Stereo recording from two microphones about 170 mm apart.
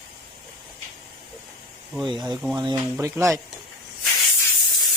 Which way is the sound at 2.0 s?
25° right (ahead or behind).